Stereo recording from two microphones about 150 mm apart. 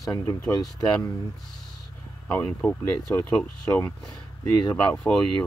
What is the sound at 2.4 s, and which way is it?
Speech, 10° left (ahead or behind).